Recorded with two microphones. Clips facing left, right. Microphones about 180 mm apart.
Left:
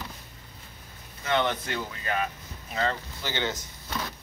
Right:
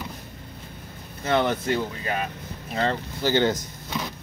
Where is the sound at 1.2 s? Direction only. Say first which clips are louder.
Right 4 dB; 35° right (ahead or behind).